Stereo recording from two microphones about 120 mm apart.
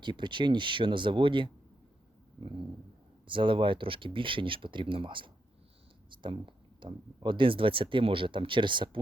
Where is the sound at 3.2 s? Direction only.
45° right (ahead or behind).